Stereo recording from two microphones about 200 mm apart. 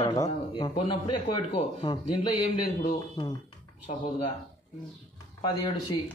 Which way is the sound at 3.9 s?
30° left (ahead or behind).